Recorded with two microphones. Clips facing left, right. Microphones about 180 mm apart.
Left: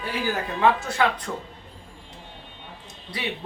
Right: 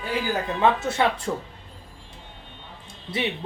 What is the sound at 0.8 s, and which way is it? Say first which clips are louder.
Speech: right 1 dB; 25° right (ahead or behind).